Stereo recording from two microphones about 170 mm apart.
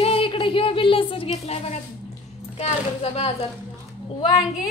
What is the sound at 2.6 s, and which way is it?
Speech, 35° left (ahead or behind).